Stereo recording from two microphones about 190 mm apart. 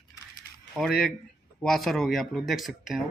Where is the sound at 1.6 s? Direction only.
Centre (ahead or behind).